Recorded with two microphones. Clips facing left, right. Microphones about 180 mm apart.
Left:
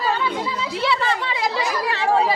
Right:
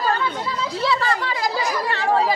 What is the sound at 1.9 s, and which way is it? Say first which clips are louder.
Chatter: left 1 dB; centre (ahead or behind).